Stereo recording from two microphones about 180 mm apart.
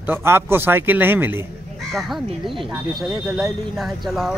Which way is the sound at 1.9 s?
Centre (ahead or behind).